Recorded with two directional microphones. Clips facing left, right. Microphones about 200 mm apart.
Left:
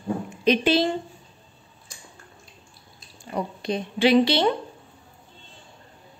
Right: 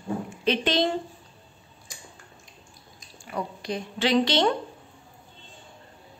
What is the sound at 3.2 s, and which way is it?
Drip, 25° left (ahead or behind).